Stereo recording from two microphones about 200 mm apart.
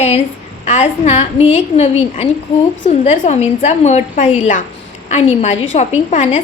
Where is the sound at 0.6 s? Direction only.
35° left (ahead or behind).